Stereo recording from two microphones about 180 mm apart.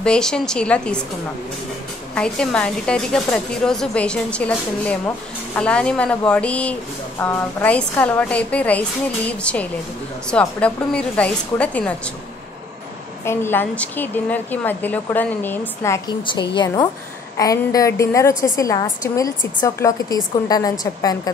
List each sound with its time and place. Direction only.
0.0 s speech: 5° left (ahead or behind)
2.1 s speech: 5° left (ahead or behind)
13.2 s a woman's voice: 15° left (ahead or behind)